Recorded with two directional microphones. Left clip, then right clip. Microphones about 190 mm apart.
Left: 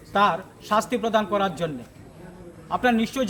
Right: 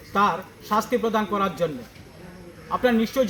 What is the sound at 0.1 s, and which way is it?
A man's voice, 25° left (ahead or behind).